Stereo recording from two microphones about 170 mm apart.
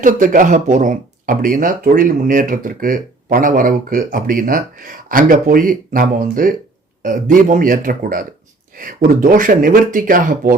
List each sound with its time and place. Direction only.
0.0 s speech: 50° right (ahead or behind)